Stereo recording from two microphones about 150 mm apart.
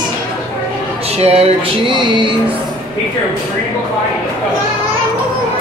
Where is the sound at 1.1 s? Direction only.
45° right (ahead or behind).